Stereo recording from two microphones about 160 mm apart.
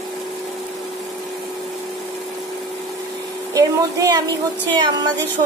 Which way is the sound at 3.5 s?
20° right (ahead or behind).